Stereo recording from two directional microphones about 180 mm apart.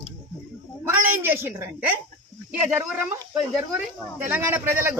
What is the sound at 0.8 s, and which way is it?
Speech, 10° right (ahead or behind).